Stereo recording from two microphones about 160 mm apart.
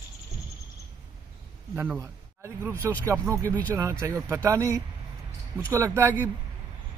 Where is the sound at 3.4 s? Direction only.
10° left (ahead or behind).